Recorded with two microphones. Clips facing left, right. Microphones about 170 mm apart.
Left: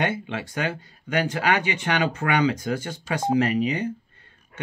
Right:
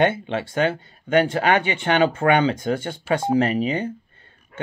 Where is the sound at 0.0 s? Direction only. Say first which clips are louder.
Right 6 dB; 25° right (ahead or behind).